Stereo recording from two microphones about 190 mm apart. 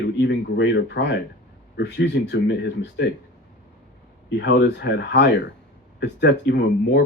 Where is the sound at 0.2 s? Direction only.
65° left (ahead or behind).